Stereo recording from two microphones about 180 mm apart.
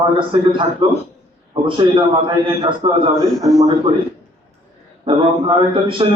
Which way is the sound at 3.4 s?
20° right (ahead or behind).